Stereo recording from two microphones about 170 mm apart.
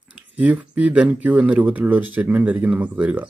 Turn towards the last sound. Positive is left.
turn(degrees=-10)  # may be behind; listen again after turning